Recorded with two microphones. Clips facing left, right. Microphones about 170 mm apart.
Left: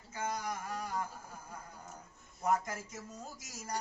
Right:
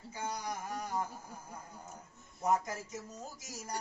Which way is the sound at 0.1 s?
15° right (ahead or behind).